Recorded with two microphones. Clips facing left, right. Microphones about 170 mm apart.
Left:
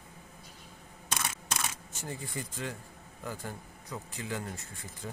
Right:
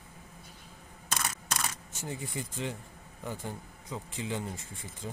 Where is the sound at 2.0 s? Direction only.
20° right (ahead or behind).